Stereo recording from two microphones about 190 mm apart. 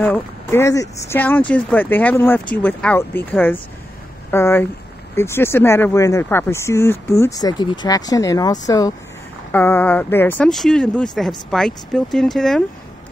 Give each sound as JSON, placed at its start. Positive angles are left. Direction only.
{"t": 0.0, "sound": "speech", "side_deg": 10}